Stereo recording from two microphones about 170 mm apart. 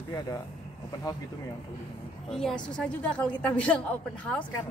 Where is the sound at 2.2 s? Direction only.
5° left (ahead or behind).